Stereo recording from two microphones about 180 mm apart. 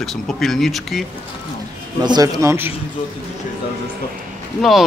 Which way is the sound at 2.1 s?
20° right (ahead or behind).